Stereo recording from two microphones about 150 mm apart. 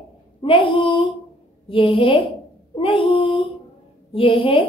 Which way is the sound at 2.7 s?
35° left (ahead or behind).